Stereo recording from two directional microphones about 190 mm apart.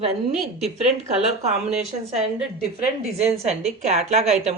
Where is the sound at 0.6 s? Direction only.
35° right (ahead or behind).